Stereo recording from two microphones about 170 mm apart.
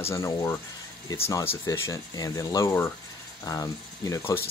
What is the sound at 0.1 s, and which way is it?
Speech, 20° left (ahead or behind).